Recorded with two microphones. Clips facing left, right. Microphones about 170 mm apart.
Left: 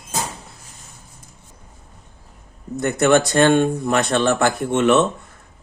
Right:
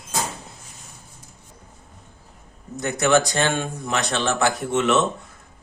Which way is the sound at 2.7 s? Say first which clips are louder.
Left 3 dB; 55° left (ahead or behind).